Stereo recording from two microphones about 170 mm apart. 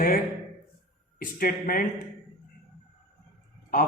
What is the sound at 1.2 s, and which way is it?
Speech, 55° left (ahead or behind).